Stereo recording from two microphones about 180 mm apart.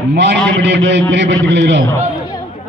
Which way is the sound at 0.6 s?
80° right.